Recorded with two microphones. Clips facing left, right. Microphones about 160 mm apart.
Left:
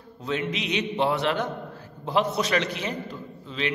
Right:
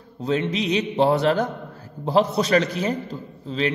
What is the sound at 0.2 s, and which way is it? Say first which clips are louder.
A man's voice: right 6 dB; 35° right (ahead or behind).